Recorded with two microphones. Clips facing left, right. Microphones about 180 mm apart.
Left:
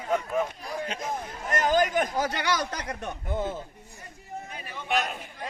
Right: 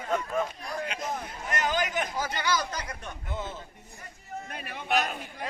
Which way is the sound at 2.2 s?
65° left (ahead or behind).